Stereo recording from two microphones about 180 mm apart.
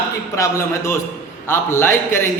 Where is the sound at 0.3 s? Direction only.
15° left (ahead or behind).